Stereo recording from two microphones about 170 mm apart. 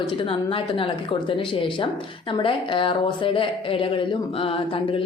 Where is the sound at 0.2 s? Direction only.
30° left (ahead or behind).